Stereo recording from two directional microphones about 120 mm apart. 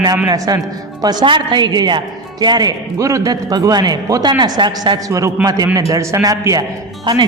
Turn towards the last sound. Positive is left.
turn(degrees=-40)  # may be behind; listen again after turning